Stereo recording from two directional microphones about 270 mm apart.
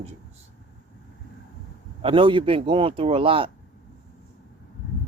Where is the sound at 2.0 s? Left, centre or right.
Centre.